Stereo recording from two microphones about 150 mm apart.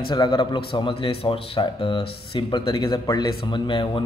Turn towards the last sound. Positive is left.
turn(degrees=35)  # may be behind; listen again after turning